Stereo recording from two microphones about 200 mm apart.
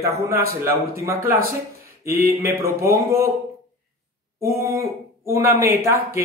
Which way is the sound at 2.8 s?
15° right (ahead or behind).